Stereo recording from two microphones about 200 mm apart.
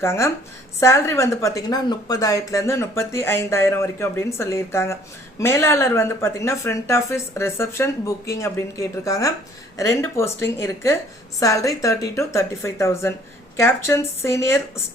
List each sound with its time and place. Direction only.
0.0 s a woman's voice: 15° left (ahead or behind)